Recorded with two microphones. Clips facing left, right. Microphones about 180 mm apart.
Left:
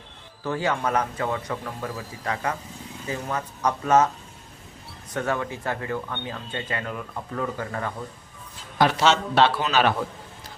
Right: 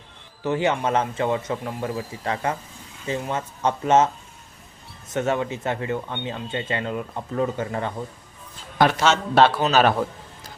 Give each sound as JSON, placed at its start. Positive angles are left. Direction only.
{"t": 0.4, "sound": "speech", "side_deg": -20}
{"t": 8.8, "sound": "a man's voice", "side_deg": -55}
{"t": 9.3, "sound": "a man's voice", "side_deg": -40}